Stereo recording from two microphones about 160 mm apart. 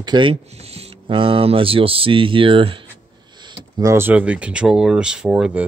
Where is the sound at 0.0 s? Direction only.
30° right (ahead or behind).